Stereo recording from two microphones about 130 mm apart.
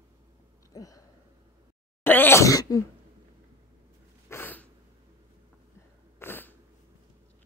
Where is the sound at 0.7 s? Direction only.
25° left (ahead or behind).